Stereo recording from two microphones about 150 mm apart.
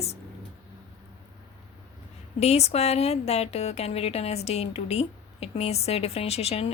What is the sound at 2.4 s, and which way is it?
Speech, 45° left (ahead or behind).